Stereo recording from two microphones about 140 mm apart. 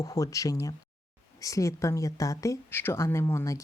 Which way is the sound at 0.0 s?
25° left (ahead or behind).